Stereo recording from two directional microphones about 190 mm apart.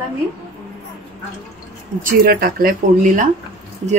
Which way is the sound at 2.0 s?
50° right (ahead or behind).